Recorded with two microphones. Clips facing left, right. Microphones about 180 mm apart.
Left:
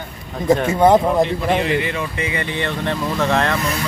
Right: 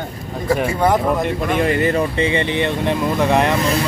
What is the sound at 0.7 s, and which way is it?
Speech, 25° left (ahead or behind).